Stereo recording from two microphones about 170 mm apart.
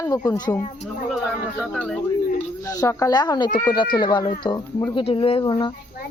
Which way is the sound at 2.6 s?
20° left (ahead or behind).